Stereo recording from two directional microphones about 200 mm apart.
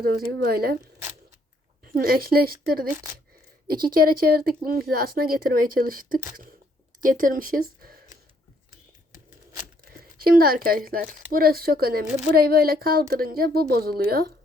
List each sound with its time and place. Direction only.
0.0 s speech: 50° right (ahead or behind)
1.8 s speech: 45° right (ahead or behind)
10.0 s a woman's voice: 45° right (ahead or behind)